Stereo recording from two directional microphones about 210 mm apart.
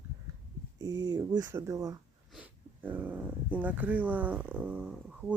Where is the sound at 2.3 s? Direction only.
5° right (ahead or behind).